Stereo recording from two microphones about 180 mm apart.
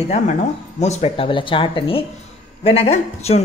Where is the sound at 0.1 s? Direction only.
40° left (ahead or behind).